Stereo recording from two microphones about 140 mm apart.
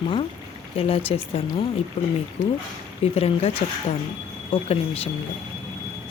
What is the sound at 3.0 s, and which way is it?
Speech, 45° left (ahead or behind).